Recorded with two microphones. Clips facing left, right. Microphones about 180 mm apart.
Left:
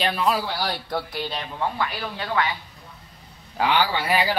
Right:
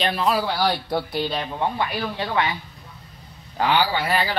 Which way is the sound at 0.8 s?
15° right (ahead or behind).